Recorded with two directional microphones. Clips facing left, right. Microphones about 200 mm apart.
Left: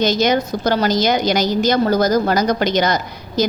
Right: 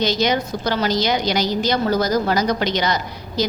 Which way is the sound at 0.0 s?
45° left (ahead or behind).